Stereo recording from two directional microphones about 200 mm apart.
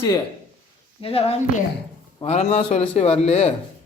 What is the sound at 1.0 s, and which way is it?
A man's voice, 30° left (ahead or behind).